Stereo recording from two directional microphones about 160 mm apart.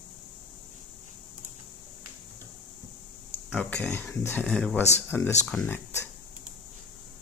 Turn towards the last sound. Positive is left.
turn(degrees=15)  # may be behind; listen again after turning